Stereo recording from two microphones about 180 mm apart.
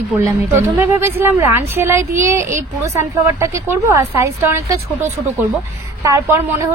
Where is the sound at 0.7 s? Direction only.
10° right (ahead or behind).